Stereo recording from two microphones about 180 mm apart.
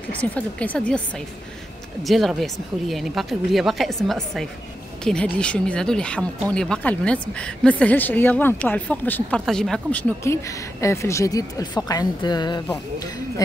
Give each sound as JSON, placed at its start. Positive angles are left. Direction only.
{"t": 0.1, "sound": "speech", "side_deg": 10}